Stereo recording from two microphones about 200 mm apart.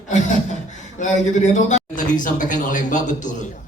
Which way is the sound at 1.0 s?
35° left (ahead or behind).